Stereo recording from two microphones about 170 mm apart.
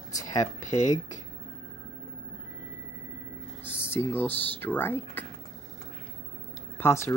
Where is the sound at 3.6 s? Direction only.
15° left (ahead or behind).